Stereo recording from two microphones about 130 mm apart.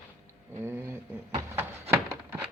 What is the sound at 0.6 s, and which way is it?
Speech, 20° right (ahead or behind).